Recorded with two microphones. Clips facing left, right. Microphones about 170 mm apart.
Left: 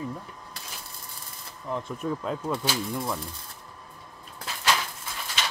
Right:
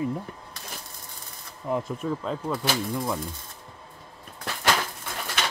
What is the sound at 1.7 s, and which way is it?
Speech, 5° right (ahead or behind).